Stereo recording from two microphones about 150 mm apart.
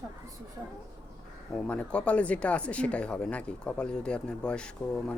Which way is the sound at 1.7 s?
10° left (ahead or behind).